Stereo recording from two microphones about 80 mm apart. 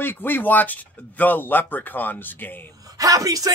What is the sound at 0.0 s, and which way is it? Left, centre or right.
Speech, left.